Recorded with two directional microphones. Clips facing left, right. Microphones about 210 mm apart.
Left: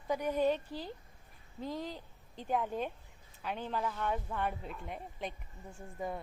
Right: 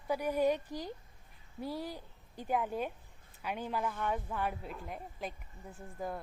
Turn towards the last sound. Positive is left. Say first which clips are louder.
# even
turn(degrees=0)  # may be behind; listen again after turning